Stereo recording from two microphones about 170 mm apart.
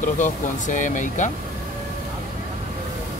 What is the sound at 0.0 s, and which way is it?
Speech, 45° left (ahead or behind).